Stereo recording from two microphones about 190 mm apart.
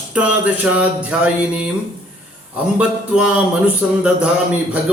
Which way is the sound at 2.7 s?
5° right (ahead or behind).